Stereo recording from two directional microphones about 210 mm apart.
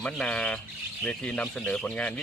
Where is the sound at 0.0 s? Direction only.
5° left (ahead or behind).